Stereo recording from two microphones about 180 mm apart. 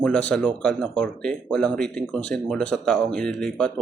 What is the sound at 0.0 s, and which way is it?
Speech, 5° left (ahead or behind).